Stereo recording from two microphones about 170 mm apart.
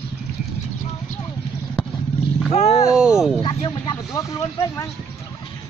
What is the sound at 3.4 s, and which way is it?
Speech, 30° left (ahead or behind).